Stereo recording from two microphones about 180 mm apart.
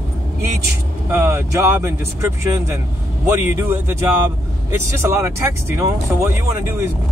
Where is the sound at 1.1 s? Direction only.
15° right (ahead or behind).